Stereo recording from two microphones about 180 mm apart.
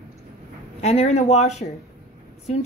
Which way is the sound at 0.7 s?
35° left (ahead or behind).